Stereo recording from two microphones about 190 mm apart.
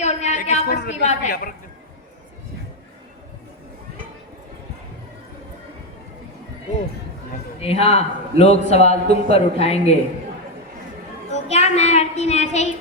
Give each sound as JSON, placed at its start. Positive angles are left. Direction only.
{"t": 0.0, "sound": "a sound", "side_deg": 35}
{"t": 0.9, "sound": "a man's voice", "side_deg": 35}
{"t": 7.6, "sound": "a man's voice", "side_deg": 30}
{"t": 11.3, "sound": "a woman's voice", "side_deg": 35}